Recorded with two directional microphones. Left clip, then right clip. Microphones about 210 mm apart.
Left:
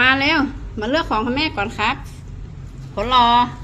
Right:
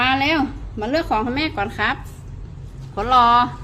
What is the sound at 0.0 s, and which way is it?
A woman's voice, 15° right (ahead or behind).